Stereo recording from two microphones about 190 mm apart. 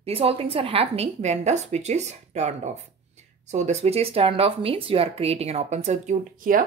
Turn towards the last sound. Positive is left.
turn(degrees=-40)  # may be behind; listen again after turning